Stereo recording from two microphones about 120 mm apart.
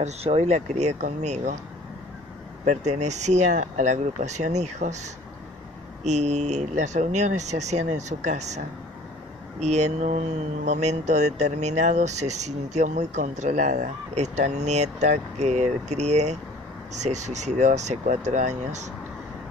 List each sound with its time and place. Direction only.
0.0 s speech: 60° right (ahead or behind); by 1.5 s 75° right (ahead or behind)
2.6 s speech: 80° right
6.0 s speech: 70° right (ahead or behind)